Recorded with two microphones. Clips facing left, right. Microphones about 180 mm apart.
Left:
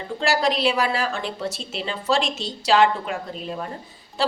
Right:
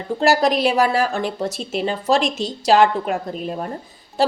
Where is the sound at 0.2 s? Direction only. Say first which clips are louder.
Right 5 dB; 45° right (ahead or behind).